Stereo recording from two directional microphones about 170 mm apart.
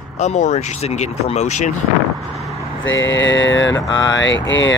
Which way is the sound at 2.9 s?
90° left.